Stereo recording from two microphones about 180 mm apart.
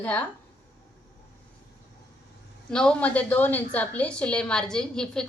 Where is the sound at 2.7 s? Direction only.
5° left (ahead or behind).